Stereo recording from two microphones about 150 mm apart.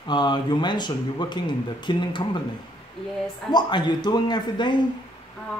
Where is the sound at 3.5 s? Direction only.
30° left (ahead or behind).